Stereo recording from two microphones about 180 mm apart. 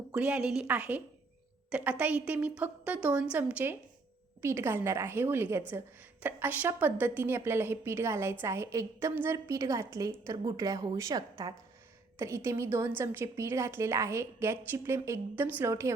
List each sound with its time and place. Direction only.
0.1 s a woman's voice: 5° right (ahead or behind)